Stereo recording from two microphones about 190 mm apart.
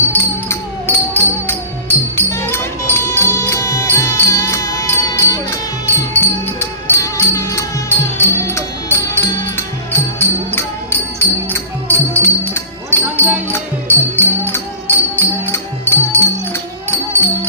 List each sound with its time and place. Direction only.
0.1 s music: 10° left (ahead or behind)